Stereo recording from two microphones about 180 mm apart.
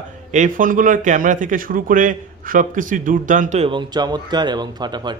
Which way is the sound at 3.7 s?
25° right (ahead or behind).